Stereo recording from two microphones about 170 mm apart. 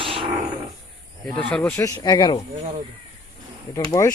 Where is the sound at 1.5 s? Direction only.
15° left (ahead or behind).